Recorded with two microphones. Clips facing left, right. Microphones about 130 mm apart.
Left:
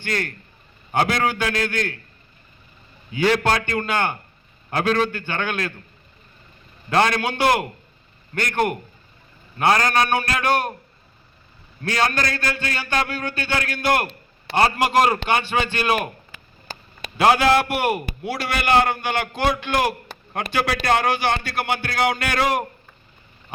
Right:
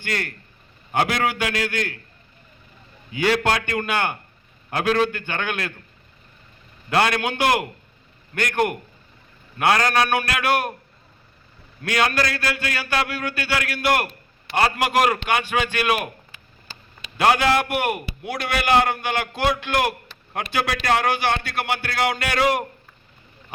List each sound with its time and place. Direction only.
0.9 s a man's voice: 10° right (ahead or behind)
3.1 s a man's voice: 10° right (ahead or behind)
6.9 s a man's voice: 10° right (ahead or behind)
12.0 s a man's voice: 10° right (ahead or behind)
15.0 s a man's voice: 35° left (ahead or behind)
15.6 s a man's voice: 5° right (ahead or behind)
16.3 s a sound: 45° left (ahead or behind)
17.2 s a man's voice: centre (ahead or behind)